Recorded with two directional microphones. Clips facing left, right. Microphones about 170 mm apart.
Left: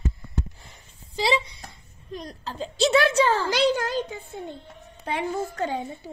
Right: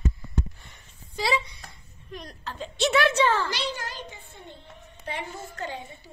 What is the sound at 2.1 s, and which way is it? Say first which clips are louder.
A child's voice: left 3 dB; 35° left (ahead or behind).